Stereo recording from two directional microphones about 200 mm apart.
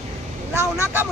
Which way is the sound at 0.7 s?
10° right (ahead or behind).